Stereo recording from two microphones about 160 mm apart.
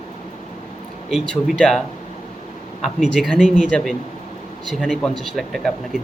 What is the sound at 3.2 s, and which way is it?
Speech, centre (ahead or behind).